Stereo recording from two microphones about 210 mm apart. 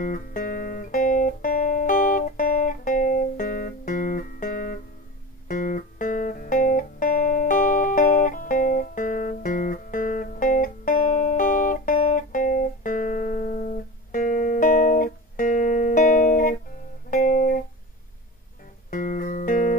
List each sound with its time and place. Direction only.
0.0 s music: 40° left (ahead or behind)
18.9 s music: 40° left (ahead or behind)